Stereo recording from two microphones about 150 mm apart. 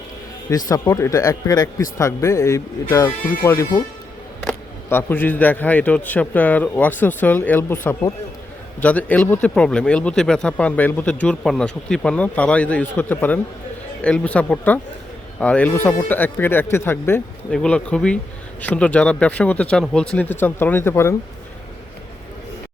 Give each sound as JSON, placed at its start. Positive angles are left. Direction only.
{"t": 0.5, "sound": "a man's voice", "side_deg": 25}
{"t": 4.9, "sound": "a man's voice", "side_deg": 15}